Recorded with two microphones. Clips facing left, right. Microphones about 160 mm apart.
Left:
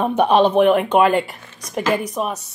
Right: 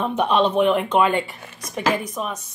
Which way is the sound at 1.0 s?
5° left (ahead or behind).